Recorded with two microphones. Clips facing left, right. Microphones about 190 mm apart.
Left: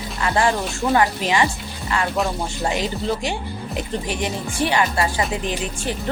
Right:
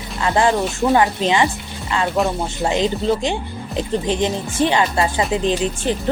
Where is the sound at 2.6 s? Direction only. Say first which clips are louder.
Right 5 dB; 25° right (ahead or behind).